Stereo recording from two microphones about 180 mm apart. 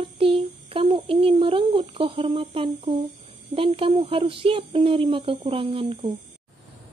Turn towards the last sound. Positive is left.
turn(degrees=-30)  # may be behind; listen again after turning